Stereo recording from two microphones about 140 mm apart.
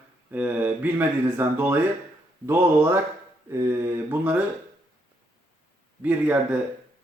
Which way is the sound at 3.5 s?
20° right (ahead or behind).